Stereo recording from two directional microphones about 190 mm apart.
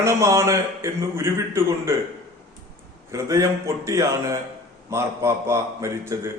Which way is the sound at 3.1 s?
15° right (ahead or behind).